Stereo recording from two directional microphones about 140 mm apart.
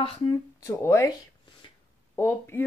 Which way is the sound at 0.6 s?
20° left (ahead or behind).